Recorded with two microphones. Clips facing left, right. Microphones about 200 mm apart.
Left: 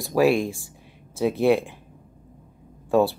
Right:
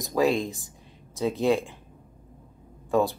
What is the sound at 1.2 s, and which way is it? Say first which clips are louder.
Speech: left 4 dB; 15° left (ahead or behind).